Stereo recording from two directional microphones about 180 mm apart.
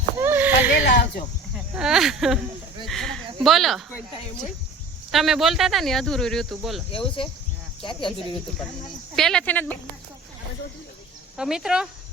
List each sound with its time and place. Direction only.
0.2 s a sound: 10° right (ahead or behind)
1.5 s speech: 5° right (ahead or behind)
5.1 s speech: centre (ahead or behind)
6.9 s speech: 30° left (ahead or behind)
9.1 s speech: 5° left (ahead or behind)
11.3 s speech: 5° right (ahead or behind)